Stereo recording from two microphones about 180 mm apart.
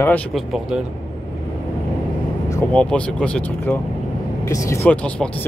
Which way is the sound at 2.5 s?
10° left (ahead or behind).